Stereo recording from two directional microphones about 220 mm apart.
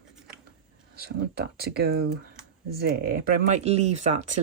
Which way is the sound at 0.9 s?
45° right (ahead or behind).